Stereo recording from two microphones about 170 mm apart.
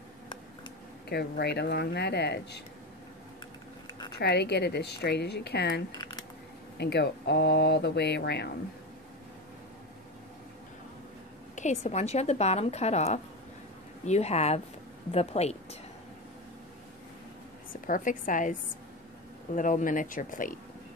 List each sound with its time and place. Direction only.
1.0 s speech: 70° left (ahead or behind)
4.2 s speech: 75° left (ahead or behind)
5.9 s a sound: 25° left (ahead or behind)
6.8 s speech: 80° left
11.5 s speech: 45° left (ahead or behind)
17.8 s speech: 50° left (ahead or behind)